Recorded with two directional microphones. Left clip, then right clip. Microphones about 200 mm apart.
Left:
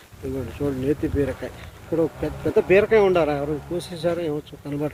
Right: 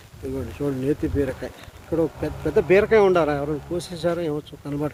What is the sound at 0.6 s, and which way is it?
Speech, 5° right (ahead or behind).